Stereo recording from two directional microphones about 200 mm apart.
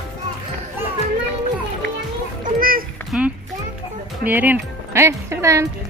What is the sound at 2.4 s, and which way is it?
Children playing, 45° right (ahead or behind).